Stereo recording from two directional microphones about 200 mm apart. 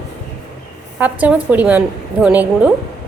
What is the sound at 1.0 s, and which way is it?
A woman's voice, 10° right (ahead or behind).